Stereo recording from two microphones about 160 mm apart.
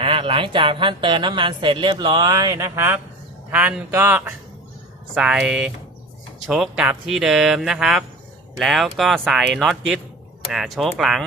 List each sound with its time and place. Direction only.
0.0 s speech: 35° right (ahead or behind); by 11.3 s centre (ahead or behind)